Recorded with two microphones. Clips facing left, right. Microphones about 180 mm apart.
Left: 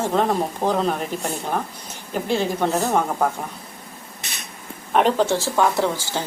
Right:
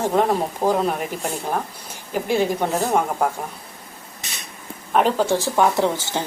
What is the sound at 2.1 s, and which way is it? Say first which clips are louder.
Speech: right 2 dB; 10° right (ahead or behind).